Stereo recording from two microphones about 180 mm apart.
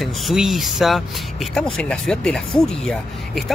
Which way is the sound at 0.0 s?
Centre (ahead or behind).